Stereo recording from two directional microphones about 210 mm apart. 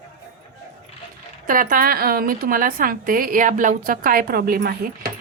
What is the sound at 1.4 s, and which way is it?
A woman's voice, 40° right (ahead or behind).